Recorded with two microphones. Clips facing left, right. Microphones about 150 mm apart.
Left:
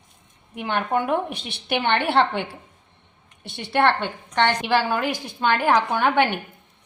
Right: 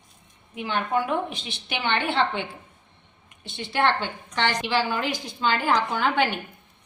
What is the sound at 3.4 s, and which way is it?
Speech, 65° left (ahead or behind).